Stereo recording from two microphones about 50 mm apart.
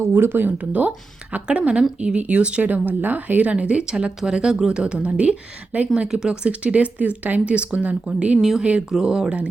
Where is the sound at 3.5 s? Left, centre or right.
Right.